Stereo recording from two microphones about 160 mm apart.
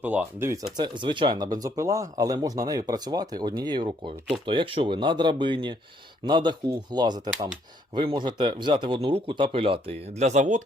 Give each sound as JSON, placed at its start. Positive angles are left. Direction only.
{"t": 0.0, "sound": "speech", "side_deg": -10}
{"t": 0.8, "sound": "speech", "side_deg": -30}
{"t": 10.2, "sound": "speech", "side_deg": -45}